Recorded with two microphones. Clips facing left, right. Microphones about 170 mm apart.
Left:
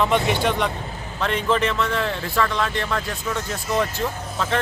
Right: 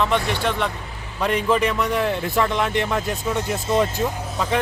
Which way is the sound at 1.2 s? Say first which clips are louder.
Right 2 dB; 10° right (ahead or behind).